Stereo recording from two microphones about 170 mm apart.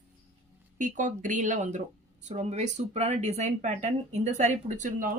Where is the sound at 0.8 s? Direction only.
50° right (ahead or behind).